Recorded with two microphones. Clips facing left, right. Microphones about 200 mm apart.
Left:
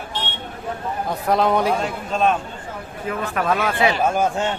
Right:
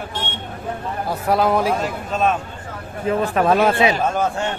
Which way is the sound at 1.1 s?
5° right (ahead or behind).